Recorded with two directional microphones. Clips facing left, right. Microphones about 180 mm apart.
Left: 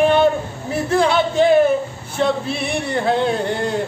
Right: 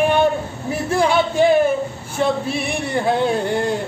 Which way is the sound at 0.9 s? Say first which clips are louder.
Left 1 dB; 10° right (ahead or behind).